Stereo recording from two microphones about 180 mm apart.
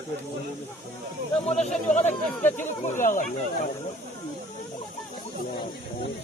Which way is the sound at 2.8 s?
45° left (ahead or behind).